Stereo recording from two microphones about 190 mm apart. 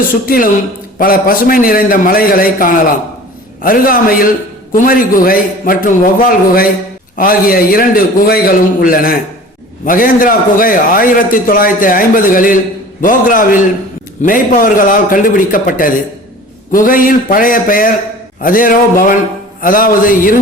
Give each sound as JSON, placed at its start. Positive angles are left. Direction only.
{"t": 0.3, "sound": "a man's voice", "side_deg": 50}